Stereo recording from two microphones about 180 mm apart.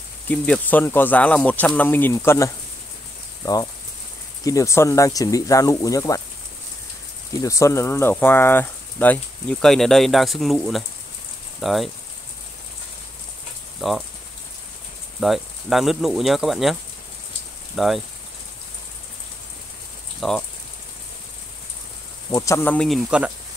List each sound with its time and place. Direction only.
0.3 s speech: 10° left (ahead or behind)
4.5 s speech: 15° left (ahead or behind)
7.4 s speech: 15° left (ahead or behind); by 11.9 s centre (ahead or behind)
13.7 s speech: centre (ahead or behind)
15.1 s speech: centre (ahead or behind)
17.7 s speech: centre (ahead or behind)
20.2 s speech: 5° left (ahead or behind)
22.3 s speech: 15° left (ahead or behind); by 23.3 s 5° right (ahead or behind)